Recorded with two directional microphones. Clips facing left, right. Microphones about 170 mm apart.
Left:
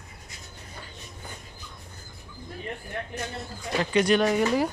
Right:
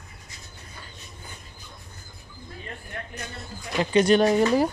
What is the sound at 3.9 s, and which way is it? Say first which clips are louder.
Speech: right 4 dB; 30° right (ahead or behind).